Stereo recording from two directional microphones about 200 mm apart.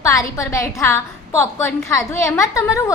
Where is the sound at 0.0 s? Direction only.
15° left (ahead or behind).